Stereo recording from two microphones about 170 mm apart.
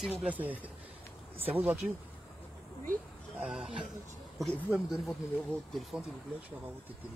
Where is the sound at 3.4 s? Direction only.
5° right (ahead or behind).